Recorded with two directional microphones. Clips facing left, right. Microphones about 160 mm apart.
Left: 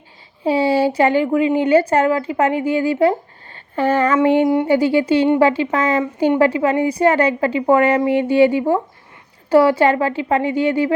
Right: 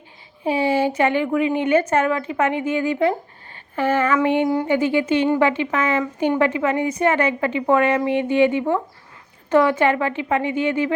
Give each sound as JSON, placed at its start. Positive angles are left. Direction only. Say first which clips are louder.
{"t": 0.5, "sound": "a sound", "louder": "left 3 dB", "side_deg": 35}
{"t": 0.9, "sound": "a woman's voice", "louder": "left 4 dB", "side_deg": 35}
{"t": 4.4, "sound": "a woman's voice", "louder": "left 4 dB", "side_deg": 25}
{"t": 4.7, "sound": "a woman's voice", "louder": "left 4 dB", "side_deg": 35}